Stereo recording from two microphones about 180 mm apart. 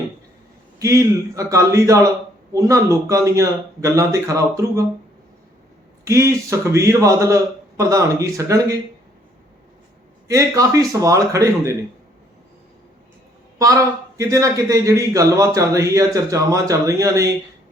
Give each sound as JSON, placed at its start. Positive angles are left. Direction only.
{"t": 0.8, "sound": "a man's voice", "side_deg": -15}
{"t": 6.1, "sound": "a man's voice", "side_deg": -15}
{"t": 10.2, "sound": "a man's voice", "side_deg": -20}
{"t": 13.6, "sound": "a man's voice", "side_deg": -15}